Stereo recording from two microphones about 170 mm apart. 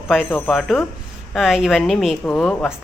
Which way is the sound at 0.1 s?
Centre (ahead or behind).